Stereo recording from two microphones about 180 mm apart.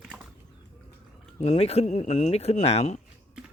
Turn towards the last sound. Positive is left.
turn(degrees=35)  # may be behind; listen again after turning